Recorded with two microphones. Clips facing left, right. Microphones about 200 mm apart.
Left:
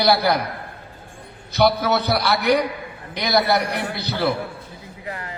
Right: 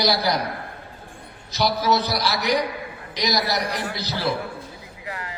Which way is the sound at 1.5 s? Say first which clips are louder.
Left 3 dB; 60° left (ahead or behind).